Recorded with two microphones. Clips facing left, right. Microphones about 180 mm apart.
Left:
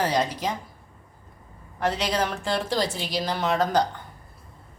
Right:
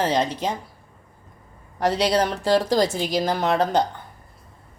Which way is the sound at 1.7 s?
35° right (ahead or behind).